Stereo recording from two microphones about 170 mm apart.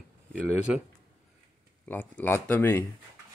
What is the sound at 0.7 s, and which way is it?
Speech, 5° right (ahead or behind).